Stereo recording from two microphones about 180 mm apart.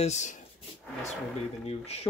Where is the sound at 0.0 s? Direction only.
40° left (ahead or behind).